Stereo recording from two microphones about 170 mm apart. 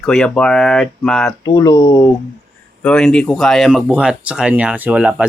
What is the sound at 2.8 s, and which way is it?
Speech, 5° left (ahead or behind).